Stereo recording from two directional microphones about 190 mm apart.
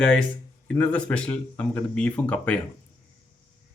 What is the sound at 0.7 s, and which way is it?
Speech, 5° left (ahead or behind).